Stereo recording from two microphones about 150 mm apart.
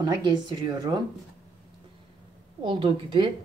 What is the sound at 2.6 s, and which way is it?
Speech, 35° right (ahead or behind).